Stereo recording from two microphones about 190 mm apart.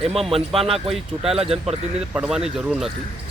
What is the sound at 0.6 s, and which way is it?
Speech, 30° right (ahead or behind).